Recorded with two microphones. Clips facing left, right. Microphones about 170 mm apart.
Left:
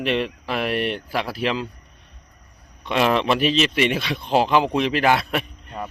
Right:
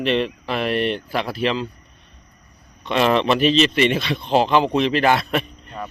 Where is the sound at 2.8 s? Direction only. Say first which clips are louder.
Right 2 dB; 5° left (ahead or behind).